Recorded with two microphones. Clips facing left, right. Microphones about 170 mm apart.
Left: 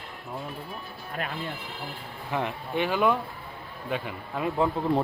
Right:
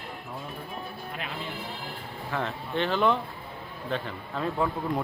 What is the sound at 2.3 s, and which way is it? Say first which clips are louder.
Speech: left 2 dB; 15° left (ahead or behind).